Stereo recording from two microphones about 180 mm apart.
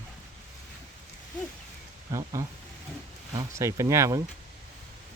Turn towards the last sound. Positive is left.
turn(degrees=-15)  # may be behind; listen again after turning